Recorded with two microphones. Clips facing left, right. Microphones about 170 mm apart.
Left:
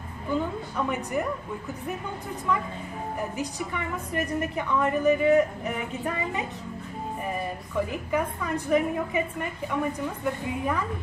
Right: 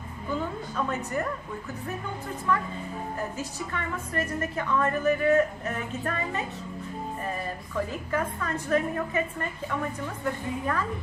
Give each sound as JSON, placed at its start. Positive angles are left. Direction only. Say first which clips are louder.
{"t": 0.8, "sound": "a woman's voice", "louder": "left 3 dB", "side_deg": 15}
{"t": 3.2, "sound": "a woman's voice", "louder": "left 5 dB", "side_deg": 15}